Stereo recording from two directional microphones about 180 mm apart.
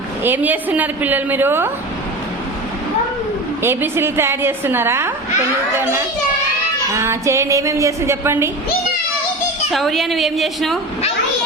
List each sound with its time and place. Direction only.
0.2 s a woman's voice: 10° right (ahead or behind)
3.6 s a woman's voice: 15° right (ahead or behind)
6.9 s a woman's voice: 15° right (ahead or behind)
9.7 s a woman's voice: centre (ahead or behind)